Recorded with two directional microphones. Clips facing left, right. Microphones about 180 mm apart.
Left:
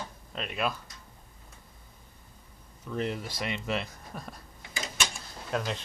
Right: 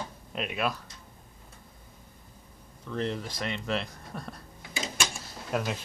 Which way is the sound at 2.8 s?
5° left (ahead or behind).